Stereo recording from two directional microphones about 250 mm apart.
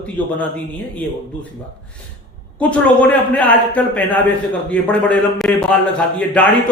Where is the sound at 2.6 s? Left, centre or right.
Centre.